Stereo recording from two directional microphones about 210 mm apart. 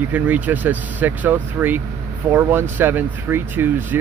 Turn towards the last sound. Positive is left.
turn(degrees=-10)  # may be behind; listen again after turning